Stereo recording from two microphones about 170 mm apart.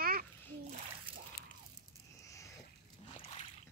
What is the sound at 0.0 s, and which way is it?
Splash, 60° right (ahead or behind).